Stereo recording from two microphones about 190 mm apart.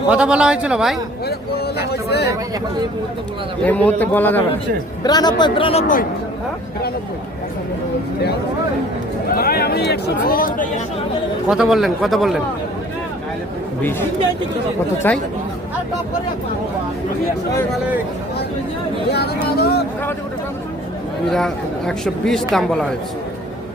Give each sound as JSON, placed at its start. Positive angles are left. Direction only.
{"t": 0.1, "sound": "speech", "side_deg": -5}
{"t": 1.3, "sound": "speech", "side_deg": 55}
{"t": 3.6, "sound": "a man's voice", "side_deg": 10}
{"t": 5.0, "sound": "speech", "side_deg": 20}
{"t": 9.3, "sound": "speech", "side_deg": 50}
{"t": 11.4, "sound": "speech", "side_deg": -5}
{"t": 15.1, "sound": "a man's voice", "side_deg": 10}
{"t": 19.1, "sound": "speech", "side_deg": 55}
{"t": 21.2, "sound": "speech", "side_deg": 0}